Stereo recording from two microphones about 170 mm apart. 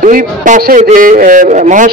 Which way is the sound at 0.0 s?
50° right (ahead or behind).